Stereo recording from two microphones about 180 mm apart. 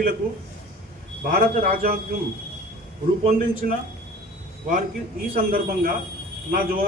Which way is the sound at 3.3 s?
50° right (ahead or behind).